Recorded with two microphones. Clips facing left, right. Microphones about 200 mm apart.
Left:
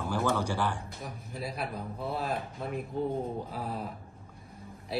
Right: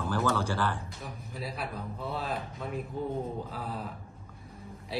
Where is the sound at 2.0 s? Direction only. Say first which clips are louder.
Left 2 dB; 15° left (ahead or behind).